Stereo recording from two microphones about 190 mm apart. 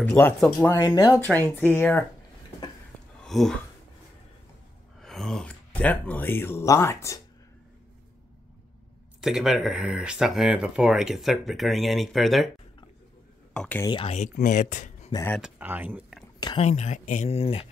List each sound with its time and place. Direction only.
0.0 s speech: 5° left (ahead or behind)
0.7 s speech: 20° left (ahead or behind)
1.2 s speech: 10° left (ahead or behind)
3.3 s speech: centre (ahead or behind)
5.0 s speech: centre (ahead or behind)
9.2 s speech: centre (ahead or behind)
13.5 s speech: 5° left (ahead or behind)
13.8 s speech: 30° left (ahead or behind)
15.1 s speech: 20° left (ahead or behind)
15.4 s speech: 10° right (ahead or behind)
16.3 s a sound: 20° left (ahead or behind)
16.6 s speech: 35° left (ahead or behind)